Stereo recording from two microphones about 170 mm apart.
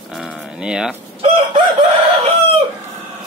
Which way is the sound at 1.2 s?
35° right (ahead or behind).